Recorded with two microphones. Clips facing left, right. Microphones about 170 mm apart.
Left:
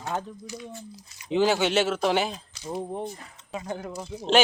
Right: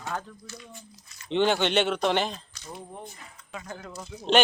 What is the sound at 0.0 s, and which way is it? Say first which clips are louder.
Speech: left 3 dB; 20° left (ahead or behind).